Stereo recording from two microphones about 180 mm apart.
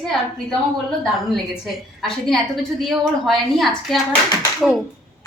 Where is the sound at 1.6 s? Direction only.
Centre (ahead or behind).